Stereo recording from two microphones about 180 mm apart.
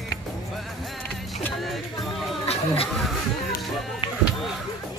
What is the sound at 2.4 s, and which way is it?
Chatter, 35° left (ahead or behind).